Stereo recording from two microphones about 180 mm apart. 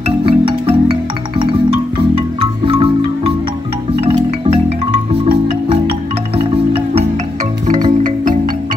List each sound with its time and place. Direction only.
0.2 s music: 30° right (ahead or behind)
2.1 s music: 30° right (ahead or behind)
6.3 s music: 30° right (ahead or behind)